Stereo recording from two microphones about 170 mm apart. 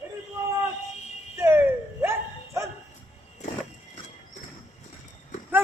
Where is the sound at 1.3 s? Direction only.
15° right (ahead or behind).